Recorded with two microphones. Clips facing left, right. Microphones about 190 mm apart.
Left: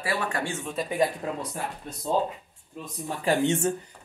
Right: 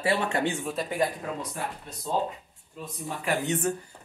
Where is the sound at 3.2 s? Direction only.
25° left (ahead or behind).